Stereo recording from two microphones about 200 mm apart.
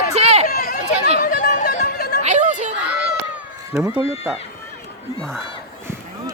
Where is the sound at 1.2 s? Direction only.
45° left (ahead or behind).